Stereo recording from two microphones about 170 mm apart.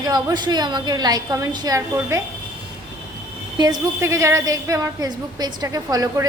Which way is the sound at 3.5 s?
20° right (ahead or behind).